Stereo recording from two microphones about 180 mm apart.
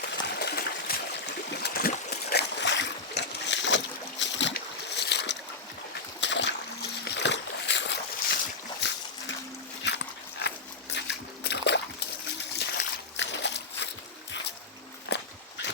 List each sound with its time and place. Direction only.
0.3 s water: 65° left (ahead or behind)
1.5 s boat: 65° left (ahead or behind)
6.1 s a sound: 85° left
7.0 s boat: 75° left (ahead or behind)
8.8 s splash: 70° left (ahead or behind)
9.8 s dog: 70° left (ahead or behind)
12.5 s splash: 70° left (ahead or behind)
15.1 s walk: 75° left (ahead or behind)